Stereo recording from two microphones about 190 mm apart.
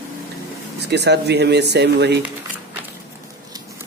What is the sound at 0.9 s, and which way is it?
Speech, 60° right (ahead or behind).